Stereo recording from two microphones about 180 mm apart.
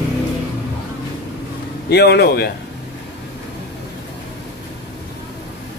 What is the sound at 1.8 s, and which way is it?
Speech, 65° left (ahead or behind).